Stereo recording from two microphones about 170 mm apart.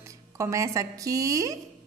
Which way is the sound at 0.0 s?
15° right (ahead or behind).